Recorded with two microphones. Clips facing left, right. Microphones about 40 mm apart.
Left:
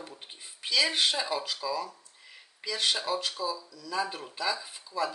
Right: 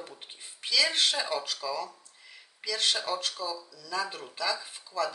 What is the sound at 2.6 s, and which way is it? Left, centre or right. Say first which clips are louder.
Speech: even; left.